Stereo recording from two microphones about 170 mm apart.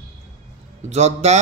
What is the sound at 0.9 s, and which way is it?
Speech, 40° right (ahead or behind).